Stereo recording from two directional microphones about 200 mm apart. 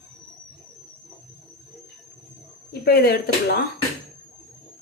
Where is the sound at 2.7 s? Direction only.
50° left (ahead or behind).